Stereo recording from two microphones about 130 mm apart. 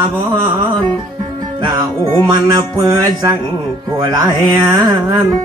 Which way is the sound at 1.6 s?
35° right (ahead or behind).